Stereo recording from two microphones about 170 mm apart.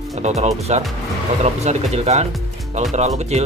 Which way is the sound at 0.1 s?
40° right (ahead or behind).